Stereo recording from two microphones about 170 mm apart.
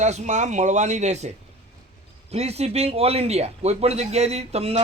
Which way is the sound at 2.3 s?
40° right (ahead or behind).